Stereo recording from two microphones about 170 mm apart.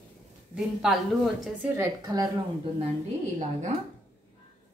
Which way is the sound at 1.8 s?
20° right (ahead or behind).